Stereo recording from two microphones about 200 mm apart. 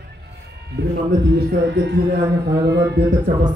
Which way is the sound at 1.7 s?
60° right (ahead or behind).